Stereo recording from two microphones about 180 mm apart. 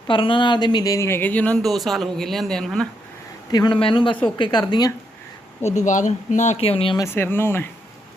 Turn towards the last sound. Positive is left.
turn(degrees=15)  # may be behind; listen again after turning